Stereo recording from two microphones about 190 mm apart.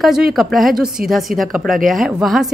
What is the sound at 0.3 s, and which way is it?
Speech, centre (ahead or behind).